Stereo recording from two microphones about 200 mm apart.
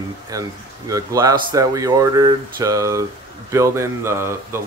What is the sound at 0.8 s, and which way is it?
Speech, 15° right (ahead or behind).